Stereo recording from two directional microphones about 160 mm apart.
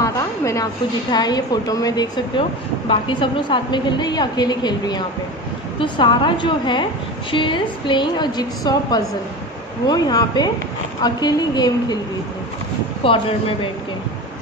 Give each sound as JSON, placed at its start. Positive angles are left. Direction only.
{"t": 0.0, "sound": "a sound", "side_deg": 20}
{"t": 1.1, "sound": "a woman's voice", "side_deg": 25}
{"t": 13.0, "sound": "speech", "side_deg": 35}